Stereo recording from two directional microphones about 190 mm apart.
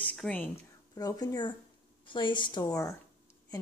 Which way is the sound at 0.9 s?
20° left (ahead or behind).